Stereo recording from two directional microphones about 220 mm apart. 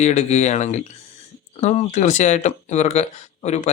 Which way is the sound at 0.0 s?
30° left (ahead or behind).